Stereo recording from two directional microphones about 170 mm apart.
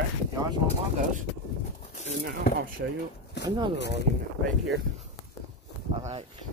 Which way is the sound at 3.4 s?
80° left.